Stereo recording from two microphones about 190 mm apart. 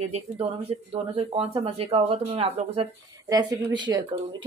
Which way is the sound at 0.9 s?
30° right (ahead or behind).